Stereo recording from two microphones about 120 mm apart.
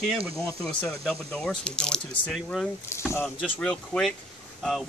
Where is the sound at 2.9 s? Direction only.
25° left (ahead or behind).